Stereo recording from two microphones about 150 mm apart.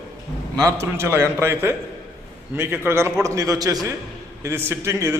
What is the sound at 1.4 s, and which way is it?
A man's voice, 15° right (ahead or behind).